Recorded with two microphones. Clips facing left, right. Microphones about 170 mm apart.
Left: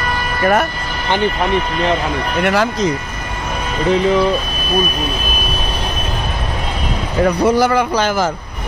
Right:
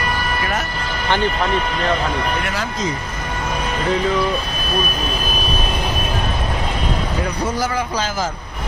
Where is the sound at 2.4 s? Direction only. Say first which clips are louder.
Left 8 dB; 65° left (ahead or behind).